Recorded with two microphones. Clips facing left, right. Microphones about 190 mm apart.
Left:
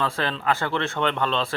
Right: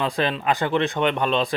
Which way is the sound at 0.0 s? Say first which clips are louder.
Right 3 dB; 15° right (ahead or behind).